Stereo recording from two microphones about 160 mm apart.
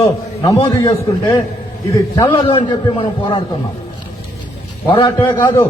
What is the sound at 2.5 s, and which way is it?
Speech, 35° left (ahead or behind).